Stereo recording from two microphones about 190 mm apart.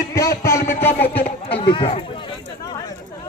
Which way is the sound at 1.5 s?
25° left (ahead or behind).